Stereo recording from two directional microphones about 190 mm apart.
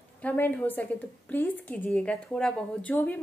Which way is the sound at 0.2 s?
10° left (ahead or behind).